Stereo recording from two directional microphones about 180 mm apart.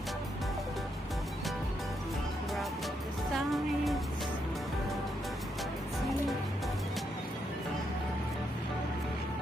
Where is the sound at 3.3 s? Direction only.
Centre (ahead or behind).